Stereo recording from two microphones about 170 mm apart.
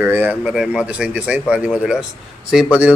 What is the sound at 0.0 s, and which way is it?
Speech, 10° right (ahead or behind).